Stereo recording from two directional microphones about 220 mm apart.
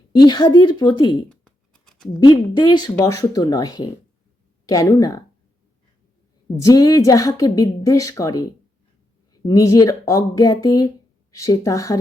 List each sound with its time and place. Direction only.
0.1 s a woman's voice: 20° left (ahead or behind)
1.3 s scratch: 5° left (ahead or behind)
2.2 s a woman's voice: 20° left (ahead or behind)
6.6 s a woman's voice: 15° left (ahead or behind)